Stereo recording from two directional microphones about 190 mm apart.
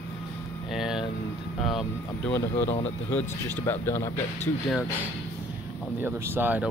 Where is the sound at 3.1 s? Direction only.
10° left (ahead or behind).